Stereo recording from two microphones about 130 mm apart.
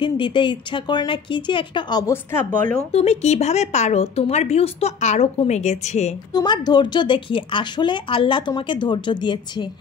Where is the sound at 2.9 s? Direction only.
55° left (ahead or behind).